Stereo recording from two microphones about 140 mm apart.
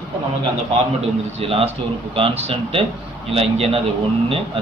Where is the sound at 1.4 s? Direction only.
45° right (ahead or behind).